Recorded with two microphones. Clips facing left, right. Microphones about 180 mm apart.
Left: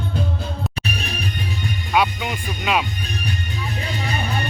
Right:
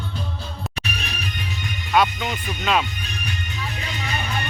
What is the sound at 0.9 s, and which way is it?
Music, 35° left (ahead or behind).